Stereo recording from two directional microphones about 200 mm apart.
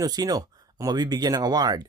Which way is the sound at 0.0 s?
20° right (ahead or behind).